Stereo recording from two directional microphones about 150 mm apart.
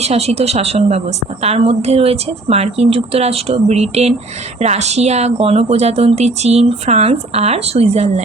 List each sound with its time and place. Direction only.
0.0 s a woman's voice: 45° right (ahead or behind)